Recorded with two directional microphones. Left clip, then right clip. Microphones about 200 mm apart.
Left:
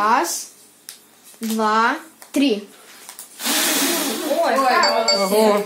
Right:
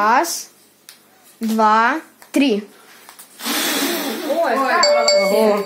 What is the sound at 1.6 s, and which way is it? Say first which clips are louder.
Speech: right 4 dB; 50° right (ahead or behind).